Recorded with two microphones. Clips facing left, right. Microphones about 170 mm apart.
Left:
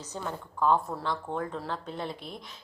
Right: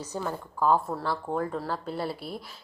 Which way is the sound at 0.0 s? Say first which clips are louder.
Right 4 dB; 10° right (ahead or behind).